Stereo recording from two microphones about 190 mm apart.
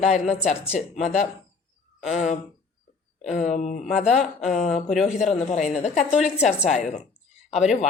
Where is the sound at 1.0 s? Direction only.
35° left (ahead or behind).